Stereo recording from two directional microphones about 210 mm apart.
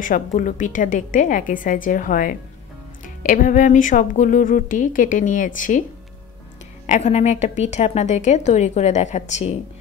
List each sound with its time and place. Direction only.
0.0 s speech: 40° left (ahead or behind)
6.9 s speech: 30° left (ahead or behind)